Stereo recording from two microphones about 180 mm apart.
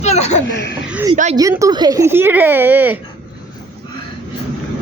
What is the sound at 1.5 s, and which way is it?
Speech, 20° right (ahead or behind).